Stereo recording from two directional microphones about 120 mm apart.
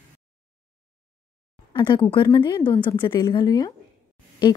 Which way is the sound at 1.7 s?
40° left (ahead or behind).